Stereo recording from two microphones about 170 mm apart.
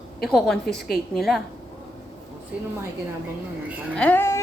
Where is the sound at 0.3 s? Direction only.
Centre (ahead or behind).